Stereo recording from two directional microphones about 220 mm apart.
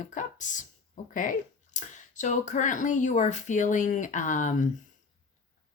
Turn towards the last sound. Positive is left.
turn(degrees=35)  # may be behind; listen again after turning